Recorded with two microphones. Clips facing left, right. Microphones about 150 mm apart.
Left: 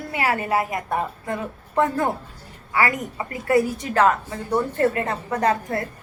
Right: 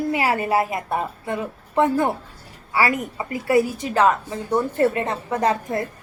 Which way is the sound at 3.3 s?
20° right (ahead or behind).